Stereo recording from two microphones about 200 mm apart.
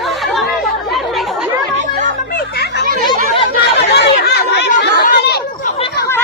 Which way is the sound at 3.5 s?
55° left (ahead or behind).